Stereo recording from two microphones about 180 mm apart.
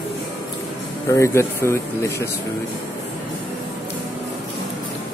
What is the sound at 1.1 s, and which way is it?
Speech, 15° left (ahead or behind).